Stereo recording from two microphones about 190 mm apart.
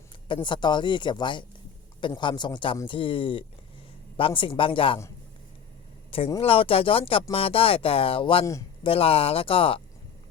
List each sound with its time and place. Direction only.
0.4 s speech: 25° left (ahead or behind)
6.1 s speech: 30° left (ahead or behind)
8.4 s a man's voice: 15° left (ahead or behind)
8.9 s speech: 30° left (ahead or behind)